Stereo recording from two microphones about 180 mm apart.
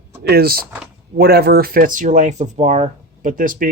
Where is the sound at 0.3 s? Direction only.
60° right (ahead or behind).